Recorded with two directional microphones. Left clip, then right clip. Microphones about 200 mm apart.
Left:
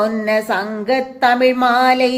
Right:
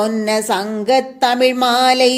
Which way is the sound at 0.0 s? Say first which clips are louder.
Left 1 dB; 45° right (ahead or behind).